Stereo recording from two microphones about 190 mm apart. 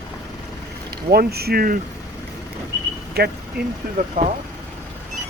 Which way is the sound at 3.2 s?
55° right (ahead or behind).